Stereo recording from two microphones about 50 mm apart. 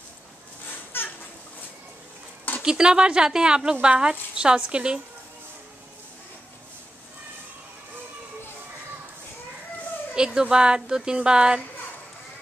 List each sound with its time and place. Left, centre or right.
0.9 s a sound: left
2.6 s speech: centre
10.1 s speech: centre